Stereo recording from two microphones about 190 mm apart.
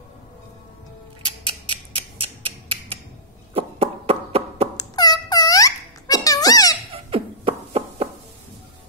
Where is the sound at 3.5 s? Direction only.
30° right (ahead or behind).